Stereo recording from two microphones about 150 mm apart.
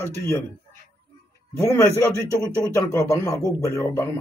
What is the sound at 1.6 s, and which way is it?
A man's voice, 20° left (ahead or behind).